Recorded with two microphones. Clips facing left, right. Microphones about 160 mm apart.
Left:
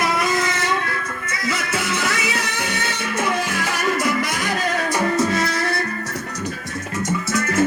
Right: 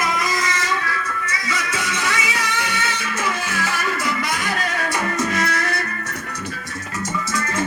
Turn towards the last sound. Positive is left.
turn(degrees=30)  # may be behind; listen again after turning